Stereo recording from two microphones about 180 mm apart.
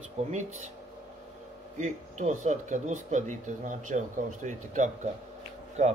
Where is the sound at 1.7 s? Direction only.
40° right (ahead or behind).